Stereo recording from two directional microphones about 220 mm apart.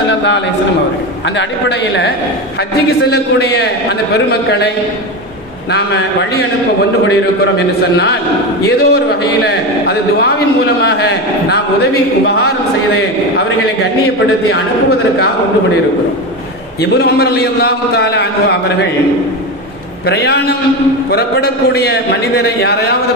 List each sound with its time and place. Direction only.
3.1 s a man's voice: 50° left (ahead or behind)
8.6 s a man's voice: 45° left (ahead or behind)
14.5 s a man's voice: 50° left (ahead or behind)
16.9 s a man's voice: 45° left (ahead or behind)
20.1 s a man's voice: 45° left (ahead or behind)